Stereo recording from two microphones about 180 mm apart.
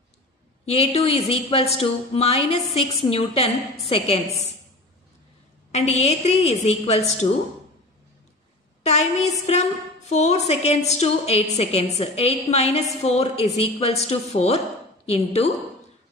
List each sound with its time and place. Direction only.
0.7 s a woman's voice: 35° left (ahead or behind)
5.7 s a woman's voice: 40° left (ahead or behind)
8.8 s a woman's voice: 40° left (ahead or behind)